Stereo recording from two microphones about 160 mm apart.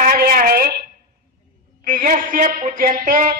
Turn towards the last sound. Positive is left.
turn(degrees=-60)  # may be behind; listen again after turning